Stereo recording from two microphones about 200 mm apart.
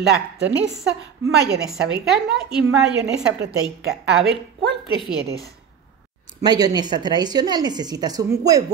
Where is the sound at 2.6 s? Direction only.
65° right (ahead or behind).